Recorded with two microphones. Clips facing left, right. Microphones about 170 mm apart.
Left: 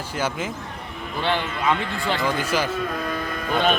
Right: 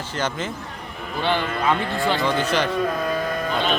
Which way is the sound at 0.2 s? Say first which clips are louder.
Even; 10° left (ahead or behind).